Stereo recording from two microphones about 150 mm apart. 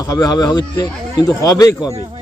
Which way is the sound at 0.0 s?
25° left (ahead or behind).